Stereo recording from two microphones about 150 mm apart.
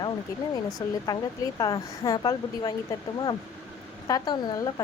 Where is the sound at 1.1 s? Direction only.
25° left (ahead or behind).